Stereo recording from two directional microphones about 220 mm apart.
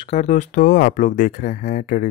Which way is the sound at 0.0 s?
30° left (ahead or behind).